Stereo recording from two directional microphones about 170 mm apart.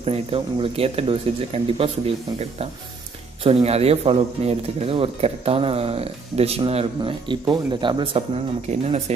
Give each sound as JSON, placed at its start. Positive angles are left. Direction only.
{"t": 0.0, "sound": "speech", "side_deg": -35}
{"t": 3.4, "sound": "speech", "side_deg": -35}